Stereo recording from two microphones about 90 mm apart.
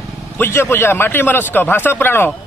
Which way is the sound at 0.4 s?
30° left (ahead or behind).